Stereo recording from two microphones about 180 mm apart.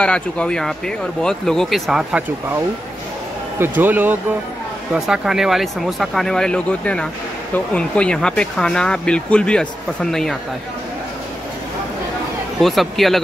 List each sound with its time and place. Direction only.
0.0 s speech: 5° left (ahead or behind)
3.5 s speech: 10° right (ahead or behind)
12.5 s speech: centre (ahead or behind)